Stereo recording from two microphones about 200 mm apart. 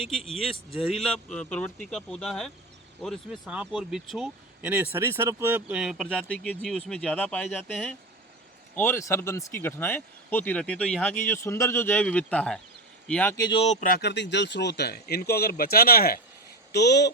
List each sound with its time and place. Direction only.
0.0 s speech: centre (ahead or behind)
13.3 s speech: 20° left (ahead or behind)
13.8 s speech: 55° left (ahead or behind)